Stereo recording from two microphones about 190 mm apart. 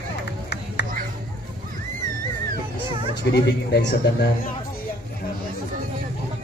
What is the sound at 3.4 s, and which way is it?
Speech, 60° left (ahead or behind).